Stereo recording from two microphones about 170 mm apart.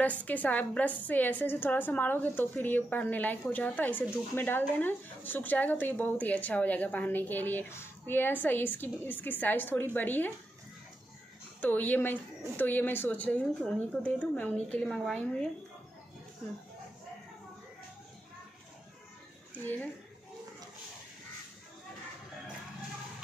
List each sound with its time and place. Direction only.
0.0 s a woman's voice: 10° left (ahead or behind)
11.6 s a woman's voice: 10° left (ahead or behind)
19.5 s speech: 10° left (ahead or behind)